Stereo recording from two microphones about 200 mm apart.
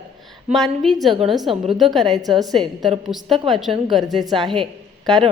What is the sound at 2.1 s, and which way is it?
Speech, 20° right (ahead or behind).